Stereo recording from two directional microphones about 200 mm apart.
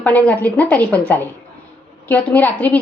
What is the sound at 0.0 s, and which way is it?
A woman's voice, 10° left (ahead or behind).